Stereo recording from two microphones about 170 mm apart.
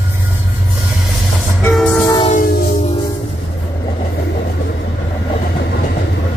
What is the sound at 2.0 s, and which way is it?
Train, 25° left (ahead or behind).